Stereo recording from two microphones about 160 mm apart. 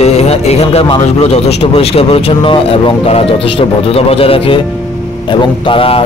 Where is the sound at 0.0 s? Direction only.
40° left (ahead or behind).